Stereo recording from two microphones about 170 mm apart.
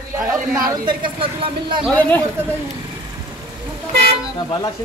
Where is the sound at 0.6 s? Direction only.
25° right (ahead or behind).